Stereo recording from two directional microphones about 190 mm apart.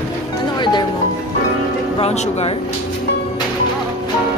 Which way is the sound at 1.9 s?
35° left (ahead or behind).